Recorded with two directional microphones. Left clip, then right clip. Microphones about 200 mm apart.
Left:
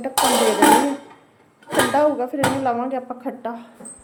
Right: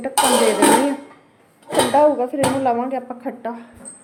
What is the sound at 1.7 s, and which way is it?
Speech, centre (ahead or behind).